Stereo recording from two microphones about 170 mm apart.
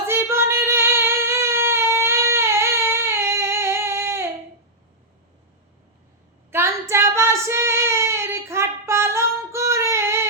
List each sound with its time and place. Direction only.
0.1 s singing: 15° right (ahead or behind)
6.5 s child singing: 15° right (ahead or behind)